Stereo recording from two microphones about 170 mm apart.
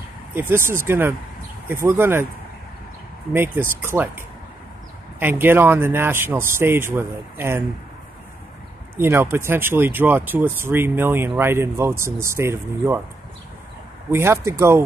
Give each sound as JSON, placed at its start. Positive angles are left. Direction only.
{"t": 0.3, "sound": "speech", "side_deg": -15}
{"t": 3.3, "sound": "speech", "side_deg": -15}
{"t": 5.2, "sound": "speech", "side_deg": -10}
{"t": 8.9, "sound": "speech", "side_deg": -15}
{"t": 14.1, "sound": "speech", "side_deg": -15}